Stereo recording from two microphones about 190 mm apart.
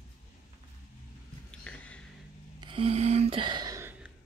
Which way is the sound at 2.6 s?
30° right (ahead or behind).